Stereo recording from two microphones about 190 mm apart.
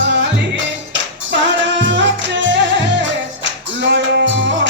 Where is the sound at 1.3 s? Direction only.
70° right (ahead or behind).